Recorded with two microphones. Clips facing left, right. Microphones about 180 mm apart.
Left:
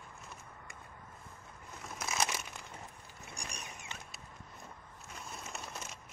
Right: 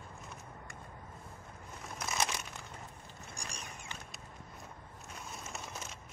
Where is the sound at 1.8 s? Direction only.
Centre (ahead or behind).